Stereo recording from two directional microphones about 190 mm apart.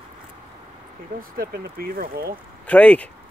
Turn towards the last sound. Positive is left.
turn(degrees=5)  # may be behind; listen again after turning